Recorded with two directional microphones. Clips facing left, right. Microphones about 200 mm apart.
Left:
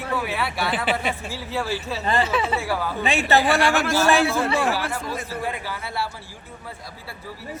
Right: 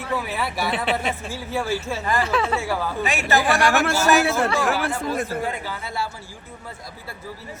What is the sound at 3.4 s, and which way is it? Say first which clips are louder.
Speech: right 1 dB; 60° right (ahead or behind).